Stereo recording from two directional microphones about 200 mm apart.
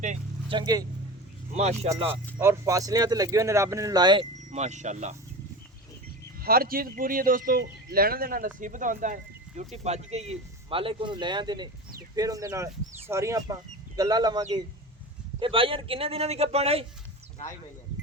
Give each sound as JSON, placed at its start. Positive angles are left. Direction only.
{"t": 0.5, "sound": "a man's voice", "side_deg": -20}
{"t": 1.5, "sound": "a man's voice", "side_deg": -35}
{"t": 2.4, "sound": "speech", "side_deg": -15}
{"t": 6.4, "sound": "a man's voice", "side_deg": -45}